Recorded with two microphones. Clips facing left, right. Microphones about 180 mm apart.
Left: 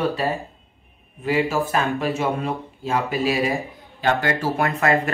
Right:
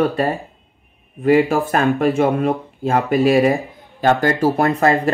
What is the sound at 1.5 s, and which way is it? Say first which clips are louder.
Speech: right 5 dB; 55° right (ahead or behind).